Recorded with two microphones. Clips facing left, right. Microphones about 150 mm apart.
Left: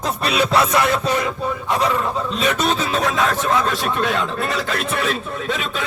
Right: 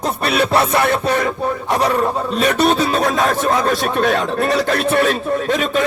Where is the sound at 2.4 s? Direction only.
60° right (ahead or behind).